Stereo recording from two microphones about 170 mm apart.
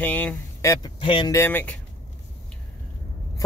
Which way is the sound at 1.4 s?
10° left (ahead or behind).